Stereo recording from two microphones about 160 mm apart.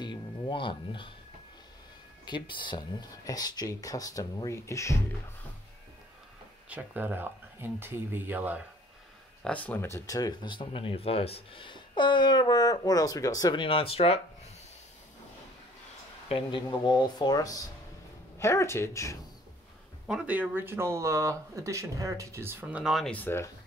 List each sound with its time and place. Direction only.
0.0 s a sound: 30° left (ahead or behind)
2.2 s speech: 30° left (ahead or behind)
6.7 s speech: 10° right (ahead or behind)
9.4 s speech: 10° left (ahead or behind); by 14.2 s 40° left (ahead or behind)
16.3 s speech: 30° left (ahead or behind)
20.1 s speech: 5° right (ahead or behind); by 23.5 s 15° left (ahead or behind)